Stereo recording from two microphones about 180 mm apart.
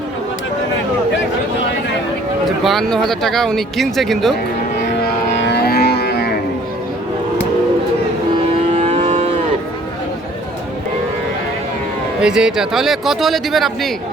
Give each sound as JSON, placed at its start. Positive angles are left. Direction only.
{"t": 2.4, "sound": "speech", "side_deg": 0}
{"t": 5.4, "sound": "livestock", "side_deg": 65}
{"t": 8.7, "sound": "a sound", "side_deg": -35}
{"t": 12.2, "sound": "speech", "side_deg": -5}